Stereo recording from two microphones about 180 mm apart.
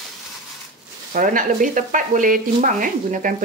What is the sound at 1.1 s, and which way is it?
Speech, 50° right (ahead or behind).